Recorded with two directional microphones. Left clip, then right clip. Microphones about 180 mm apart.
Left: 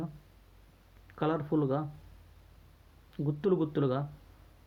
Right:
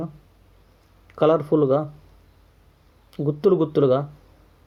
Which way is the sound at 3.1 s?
15° right (ahead or behind).